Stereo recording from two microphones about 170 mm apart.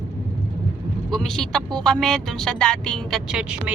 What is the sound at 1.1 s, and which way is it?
Speech, centre (ahead or behind).